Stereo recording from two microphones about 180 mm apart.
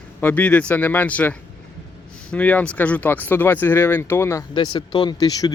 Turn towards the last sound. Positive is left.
turn(degrees=20)  # may be behind; listen again after turning